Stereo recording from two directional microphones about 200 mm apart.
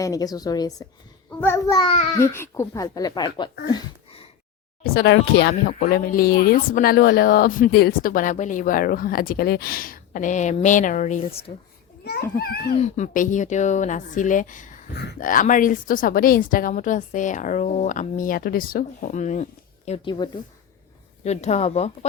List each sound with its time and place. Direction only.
0.0 s a woman's voice: 20° left (ahead or behind)
3.7 s a sound: 25° left (ahead or behind)
4.8 s speech: 55° left (ahead or behind); by 11.5 s 30° left (ahead or behind)
12.0 s speech: 50° left (ahead or behind)
12.7 s a woman's voice: 35° left (ahead or behind)
21.2 s a woman's voice: 35° left (ahead or behind)